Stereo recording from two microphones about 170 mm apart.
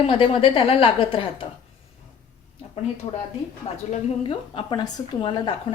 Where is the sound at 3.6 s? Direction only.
40° left (ahead or behind).